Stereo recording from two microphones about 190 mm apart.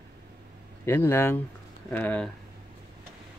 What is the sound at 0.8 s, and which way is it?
Speech, 10° left (ahead or behind).